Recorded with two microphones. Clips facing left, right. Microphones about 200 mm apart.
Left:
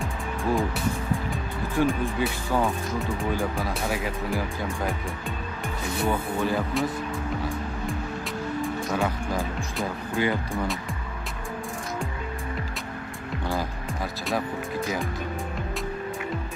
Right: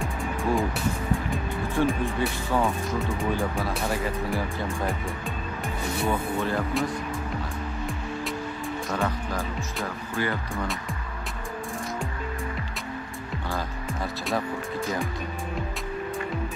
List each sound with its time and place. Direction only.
0.0 s music: centre (ahead or behind)
1.3 s speech: centre (ahead or behind)
6.0 s speech: centre (ahead or behind)
10.2 s speech: 20° left (ahead or behind)
14.2 s speech: centre (ahead or behind)